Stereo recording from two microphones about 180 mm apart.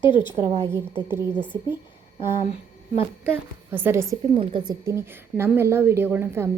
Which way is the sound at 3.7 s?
10° right (ahead or behind).